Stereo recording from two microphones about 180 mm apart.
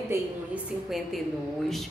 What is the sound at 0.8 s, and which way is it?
Speech, centre (ahead or behind).